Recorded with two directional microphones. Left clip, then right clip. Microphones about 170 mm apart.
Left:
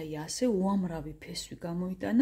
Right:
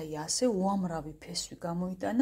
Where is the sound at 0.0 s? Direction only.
15° left (ahead or behind).